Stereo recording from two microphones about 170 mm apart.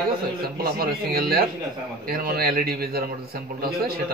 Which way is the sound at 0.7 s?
60° right (ahead or behind).